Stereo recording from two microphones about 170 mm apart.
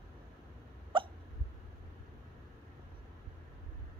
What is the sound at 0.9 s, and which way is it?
Hiccup, 30° right (ahead or behind).